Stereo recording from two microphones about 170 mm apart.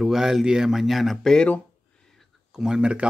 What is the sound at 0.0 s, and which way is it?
Speech, centre (ahead or behind).